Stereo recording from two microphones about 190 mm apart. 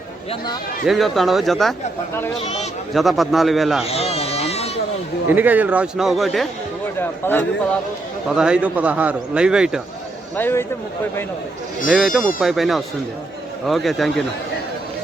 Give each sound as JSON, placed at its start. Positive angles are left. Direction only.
{"t": 0.9, "sound": "a man's voice", "side_deg": 0}
{"t": 2.9, "sound": "a man's voice", "side_deg": 0}
{"t": 3.8, "sound": "baby cry", "side_deg": 30}
{"t": 5.3, "sound": "a man's voice", "side_deg": -10}
{"t": 8.3, "sound": "a man's voice", "side_deg": -5}
{"t": 10.3, "sound": "speech", "side_deg": 10}
{"t": 11.9, "sound": "a man's voice", "side_deg": 0}